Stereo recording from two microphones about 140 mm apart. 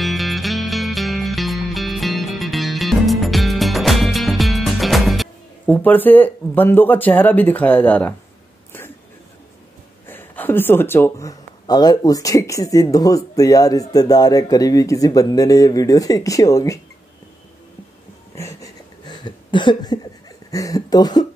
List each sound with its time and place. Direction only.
0.0 s music: centre (ahead or behind)
5.7 s speech: 10° left (ahead or behind)
10.0 s speech: 15° left (ahead or behind)
18.3 s a sound: 20° left (ahead or behind)
19.0 s a sound: 35° left (ahead or behind)
20.5 s speech: 25° left (ahead or behind)